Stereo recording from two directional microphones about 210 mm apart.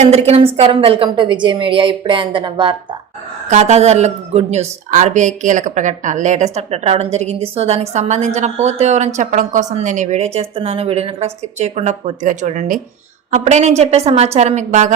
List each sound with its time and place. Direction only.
0.0 s a woman's voice: 30° right (ahead or behind)